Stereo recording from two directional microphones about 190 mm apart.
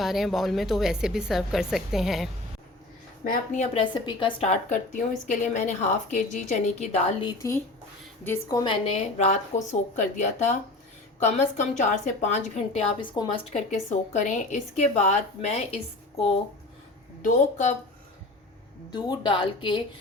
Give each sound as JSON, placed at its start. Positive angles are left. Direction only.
{"t": 0.0, "sound": "a woman's voice", "side_deg": 0}
{"t": 3.5, "sound": "a woman's voice", "side_deg": 40}
{"t": 4.0, "sound": "a woman's voice", "side_deg": 25}
{"t": 7.3, "sound": "a woman's voice", "side_deg": 15}
{"t": 17.2, "sound": "a woman's voice", "side_deg": 40}
{"t": 18.9, "sound": "a woman's voice", "side_deg": 25}